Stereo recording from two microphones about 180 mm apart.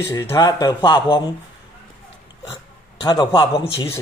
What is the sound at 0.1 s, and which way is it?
A man's voice, 20° left (ahead or behind).